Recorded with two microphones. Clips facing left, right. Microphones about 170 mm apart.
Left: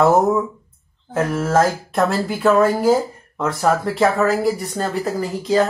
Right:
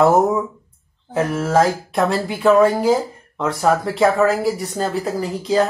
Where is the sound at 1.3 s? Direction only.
Centre (ahead or behind).